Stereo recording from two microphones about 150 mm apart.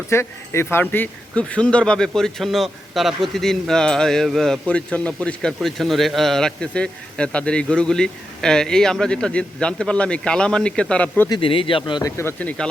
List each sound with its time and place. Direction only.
0.1 s a man's voice: 15° left (ahead or behind)
11.3 s speech: 35° left (ahead or behind)
12.1 s speech: 15° left (ahead or behind)